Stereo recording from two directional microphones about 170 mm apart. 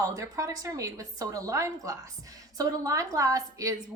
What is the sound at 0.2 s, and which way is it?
A woman's voice, 20° right (ahead or behind).